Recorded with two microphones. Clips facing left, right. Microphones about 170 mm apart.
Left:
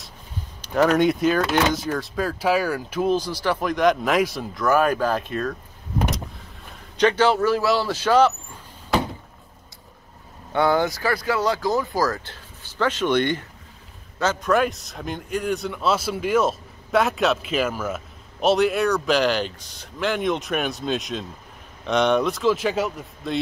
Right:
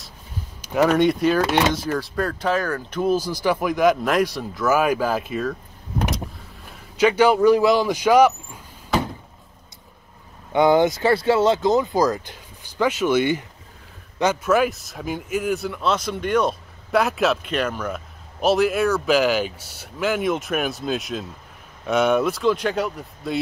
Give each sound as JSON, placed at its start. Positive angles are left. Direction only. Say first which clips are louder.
{"t": 0.6, "sound": "a man's voice", "louder": "right 1 dB", "side_deg": -5}
{"t": 3.1, "sound": "a man's voice", "louder": "right 3 dB", "side_deg": -10}
{"t": 5.9, "sound": "vehicle", "louder": "even", "side_deg": 0}
{"t": 10.5, "sound": "a man's voice", "louder": "right 4 dB", "side_deg": -20}